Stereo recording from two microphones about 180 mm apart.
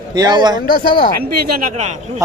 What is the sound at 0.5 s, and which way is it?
Speech, 55° left (ahead or behind).